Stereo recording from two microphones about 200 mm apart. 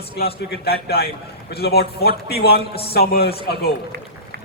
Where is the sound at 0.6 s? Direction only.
50° left (ahead or behind).